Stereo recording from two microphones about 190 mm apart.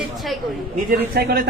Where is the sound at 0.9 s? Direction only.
55° right (ahead or behind).